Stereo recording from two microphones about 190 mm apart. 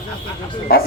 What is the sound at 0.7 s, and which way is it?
Speech, 50° left (ahead or behind).